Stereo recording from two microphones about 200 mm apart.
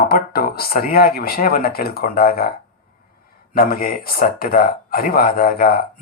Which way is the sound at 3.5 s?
45° left (ahead or behind).